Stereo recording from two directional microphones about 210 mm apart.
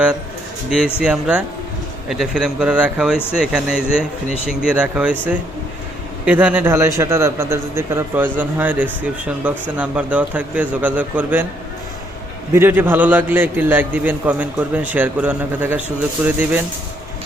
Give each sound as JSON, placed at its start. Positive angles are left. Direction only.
{"t": 0.9, "sound": "speech", "side_deg": -5}
{"t": 6.2, "sound": "a man's voice", "side_deg": -5}
{"t": 12.5, "sound": "a man's voice", "side_deg": -10}